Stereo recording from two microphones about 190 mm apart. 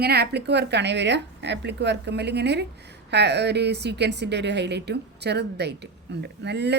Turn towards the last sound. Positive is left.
turn(degrees=-65)  # may be behind; listen again after turning